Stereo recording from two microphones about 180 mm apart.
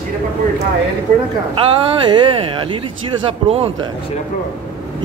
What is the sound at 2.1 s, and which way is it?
Speech, 25° right (ahead or behind).